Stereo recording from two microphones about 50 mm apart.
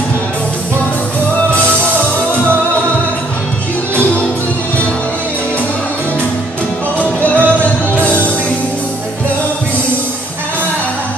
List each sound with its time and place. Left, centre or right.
1.5 s music: left
3.9 s music: left
7.0 s music: left